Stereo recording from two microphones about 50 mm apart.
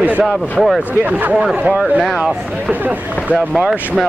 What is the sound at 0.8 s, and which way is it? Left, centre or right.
Speech, right.